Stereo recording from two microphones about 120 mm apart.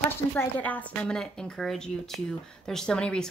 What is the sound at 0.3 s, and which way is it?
A woman's voice, 15° left (ahead or behind).